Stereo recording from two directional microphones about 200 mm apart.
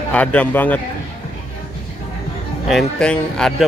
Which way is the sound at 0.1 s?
5° left (ahead or behind).